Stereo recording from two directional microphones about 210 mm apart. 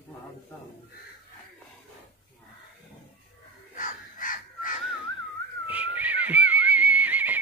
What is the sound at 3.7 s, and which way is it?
Crow, 40° left (ahead or behind).